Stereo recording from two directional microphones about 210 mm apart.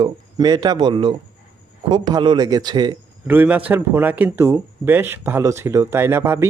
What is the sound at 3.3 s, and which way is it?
Speech, 5° right (ahead or behind).